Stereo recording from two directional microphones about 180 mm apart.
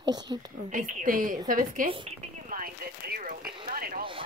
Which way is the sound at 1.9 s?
30° right (ahead or behind).